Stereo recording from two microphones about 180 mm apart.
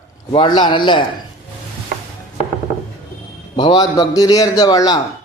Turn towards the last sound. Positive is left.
turn(degrees=20)  # may be behind; listen again after turning